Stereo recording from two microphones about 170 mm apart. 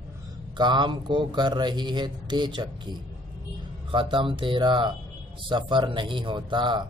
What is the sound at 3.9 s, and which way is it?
Speech, 30° right (ahead or behind).